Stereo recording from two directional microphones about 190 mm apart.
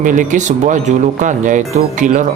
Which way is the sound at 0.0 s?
40° right (ahead or behind).